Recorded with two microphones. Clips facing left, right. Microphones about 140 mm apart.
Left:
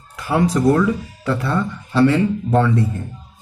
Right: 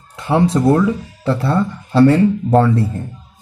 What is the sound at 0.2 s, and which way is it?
Speech, 25° right (ahead or behind).